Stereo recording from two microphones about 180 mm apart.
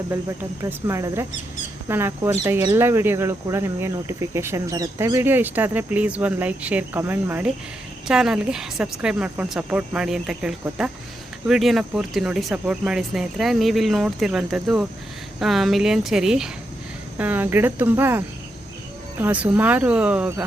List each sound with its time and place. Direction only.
0.6 s speech: 15° right (ahead or behind)
19.2 s speech: 10° right (ahead or behind)